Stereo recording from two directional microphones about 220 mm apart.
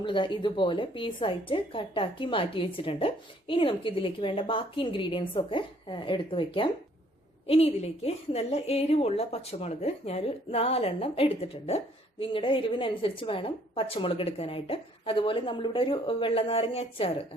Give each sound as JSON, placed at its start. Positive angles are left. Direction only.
{"t": 0.0, "sound": "speech", "side_deg": 20}